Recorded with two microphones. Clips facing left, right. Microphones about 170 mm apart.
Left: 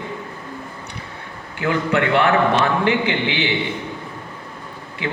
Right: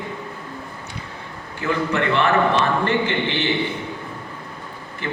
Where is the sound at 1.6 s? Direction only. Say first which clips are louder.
Left 2 dB; 65° left (ahead or behind).